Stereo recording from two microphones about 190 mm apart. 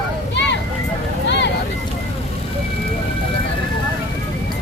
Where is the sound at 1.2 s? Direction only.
70° left (ahead or behind).